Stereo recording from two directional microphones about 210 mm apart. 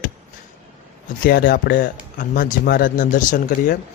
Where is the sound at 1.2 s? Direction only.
40° left (ahead or behind).